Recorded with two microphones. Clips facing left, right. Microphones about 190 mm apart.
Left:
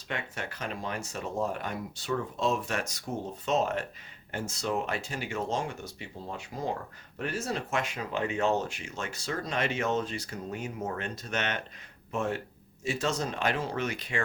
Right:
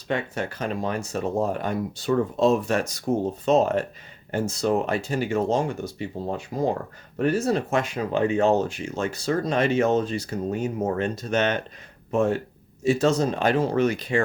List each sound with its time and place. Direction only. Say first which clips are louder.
0.1 s speech: right 9 dB; 35° right (ahead or behind)